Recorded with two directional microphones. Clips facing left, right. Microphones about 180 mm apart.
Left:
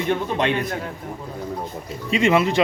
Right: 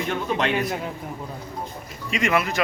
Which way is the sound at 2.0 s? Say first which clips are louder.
Left 5 dB; 30° left (ahead or behind).